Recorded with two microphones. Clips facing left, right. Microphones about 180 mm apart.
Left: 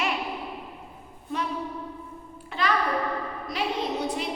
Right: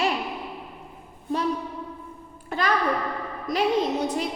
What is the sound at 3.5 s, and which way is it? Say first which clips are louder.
Speech: right 6 dB; 45° right (ahead or behind).